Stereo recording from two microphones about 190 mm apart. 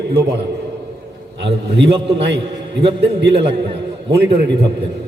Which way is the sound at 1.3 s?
65° right (ahead or behind).